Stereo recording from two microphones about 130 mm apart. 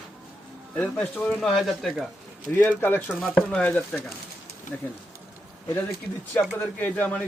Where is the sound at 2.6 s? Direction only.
15° left (ahead or behind).